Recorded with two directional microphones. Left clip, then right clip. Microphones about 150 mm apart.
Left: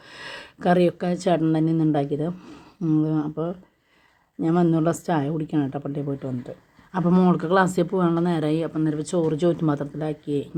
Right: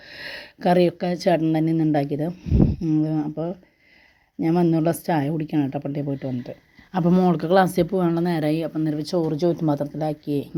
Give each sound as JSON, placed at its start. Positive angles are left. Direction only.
{"t": 0.0, "sound": "speech", "side_deg": -30}
{"t": 2.4, "sound": "speech", "side_deg": -20}